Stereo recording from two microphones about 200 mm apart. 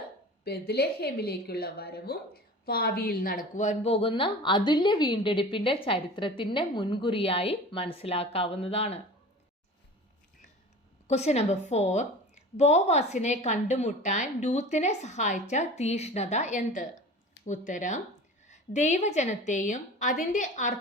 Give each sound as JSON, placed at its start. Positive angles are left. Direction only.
{"t": 0.4, "sound": "a woman's voice", "side_deg": 50}
{"t": 11.1, "sound": "a woman's voice", "side_deg": 30}
{"t": 17.4, "sound": "a sound", "side_deg": 55}
{"t": 17.7, "sound": "a woman's voice", "side_deg": 40}